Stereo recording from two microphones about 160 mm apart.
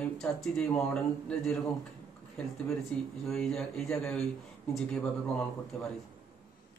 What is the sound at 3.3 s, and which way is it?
Speech, 5° left (ahead or behind).